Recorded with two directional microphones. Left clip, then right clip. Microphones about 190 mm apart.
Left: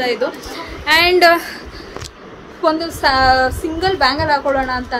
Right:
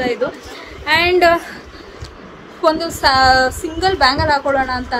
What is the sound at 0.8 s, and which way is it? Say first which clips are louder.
Speech: left 2 dB; centre (ahead or behind).